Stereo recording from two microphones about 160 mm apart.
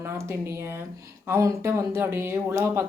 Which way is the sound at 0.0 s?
15° right (ahead or behind).